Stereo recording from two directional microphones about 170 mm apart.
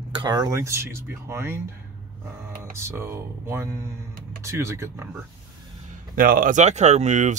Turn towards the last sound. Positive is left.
turn(degrees=-45)  # may be behind; listen again after turning